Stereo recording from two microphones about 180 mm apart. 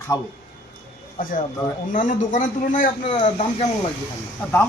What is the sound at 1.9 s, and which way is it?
A man's voice, 45° left (ahead or behind).